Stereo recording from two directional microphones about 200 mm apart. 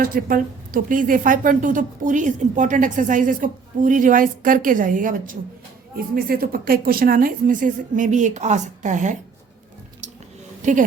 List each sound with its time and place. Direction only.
0.0 s a woman's voice: 45° right (ahead or behind)
10.6 s speech: 40° right (ahead or behind)